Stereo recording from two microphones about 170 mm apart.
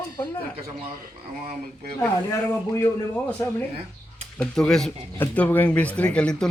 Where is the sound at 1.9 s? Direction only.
15° left (ahead or behind).